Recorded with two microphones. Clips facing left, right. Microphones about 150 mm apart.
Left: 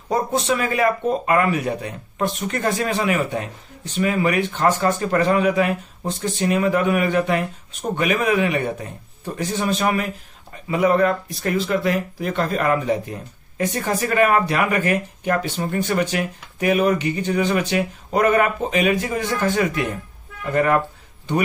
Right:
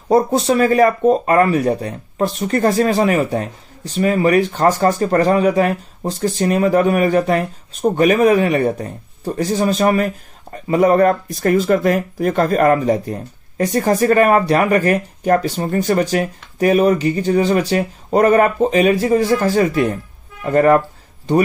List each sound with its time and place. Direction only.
0.1 s speech: 35° right (ahead or behind)